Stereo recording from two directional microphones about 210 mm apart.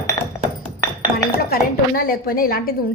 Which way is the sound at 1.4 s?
45° left (ahead or behind).